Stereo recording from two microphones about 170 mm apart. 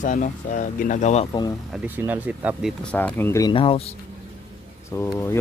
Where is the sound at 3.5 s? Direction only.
30° left (ahead or behind).